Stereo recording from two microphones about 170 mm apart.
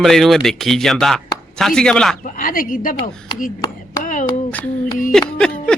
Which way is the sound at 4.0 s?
50° left (ahead or behind).